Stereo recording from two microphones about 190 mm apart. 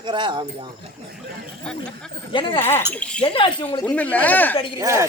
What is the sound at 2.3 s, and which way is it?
Speech, 25° left (ahead or behind).